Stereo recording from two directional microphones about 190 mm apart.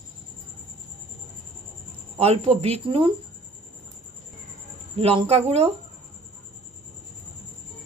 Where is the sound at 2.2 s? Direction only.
30° right (ahead or behind).